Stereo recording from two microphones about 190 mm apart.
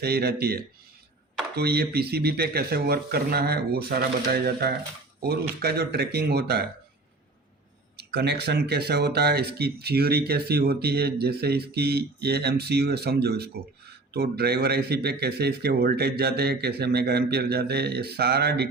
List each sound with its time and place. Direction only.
0.0 s speech: 55° right (ahead or behind)
7.9 s speech: 60° right (ahead or behind)